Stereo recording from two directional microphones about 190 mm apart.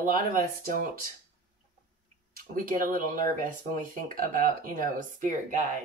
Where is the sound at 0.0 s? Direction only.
45° right (ahead or behind).